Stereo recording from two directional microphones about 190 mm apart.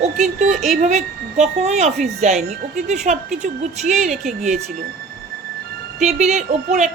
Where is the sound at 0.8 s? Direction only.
35° right (ahead or behind).